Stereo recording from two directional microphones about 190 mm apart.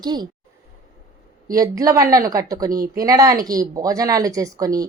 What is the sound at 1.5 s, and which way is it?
Speech, 20° right (ahead or behind).